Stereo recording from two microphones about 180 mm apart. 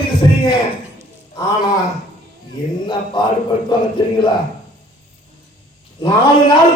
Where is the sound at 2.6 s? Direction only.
20° left (ahead or behind).